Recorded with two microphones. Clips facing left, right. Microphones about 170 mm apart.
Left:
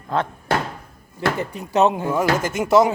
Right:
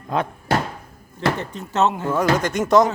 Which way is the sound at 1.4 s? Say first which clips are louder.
Left 3 dB; 10° left (ahead or behind).